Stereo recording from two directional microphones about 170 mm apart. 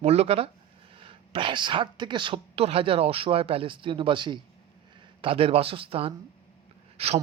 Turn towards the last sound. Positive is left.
turn(degrees=-35)  # may be behind; listen again after turning